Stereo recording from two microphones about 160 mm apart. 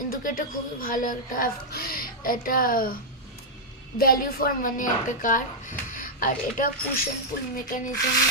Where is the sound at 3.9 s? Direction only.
65° left (ahead or behind).